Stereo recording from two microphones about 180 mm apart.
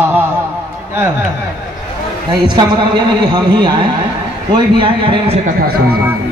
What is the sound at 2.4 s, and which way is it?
A man's voice, 25° right (ahead or behind).